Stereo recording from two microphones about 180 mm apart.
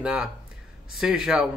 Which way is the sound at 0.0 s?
5° right (ahead or behind).